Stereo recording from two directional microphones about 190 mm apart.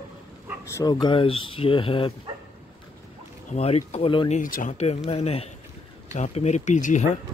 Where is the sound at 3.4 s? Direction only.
35° left (ahead or behind).